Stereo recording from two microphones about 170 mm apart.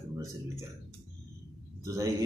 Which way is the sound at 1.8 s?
20° right (ahead or behind).